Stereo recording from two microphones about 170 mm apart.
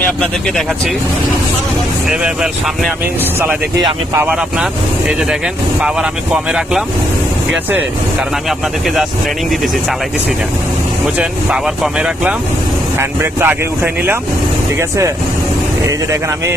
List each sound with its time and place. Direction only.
2.0 s speech: 5° right (ahead or behind)
4.2 s speech: 5° right (ahead or behind)
5.8 s speech: 5° right (ahead or behind)
11.0 s speech: 5° right (ahead or behind)